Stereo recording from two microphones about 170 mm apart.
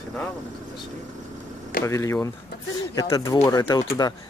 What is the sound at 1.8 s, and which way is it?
Speech, 15° left (ahead or behind).